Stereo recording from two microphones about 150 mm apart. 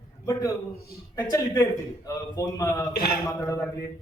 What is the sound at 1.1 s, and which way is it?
A man's voice, 20° left (ahead or behind).